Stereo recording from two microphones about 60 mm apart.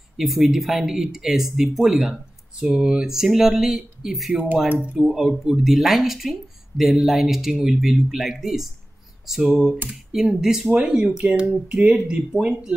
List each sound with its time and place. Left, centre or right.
0.2 s speech: centre